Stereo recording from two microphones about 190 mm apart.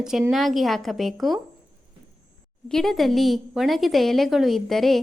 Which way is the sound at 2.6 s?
Centre (ahead or behind).